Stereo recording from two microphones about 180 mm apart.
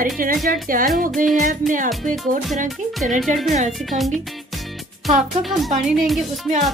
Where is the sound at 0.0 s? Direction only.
50° right (ahead or behind).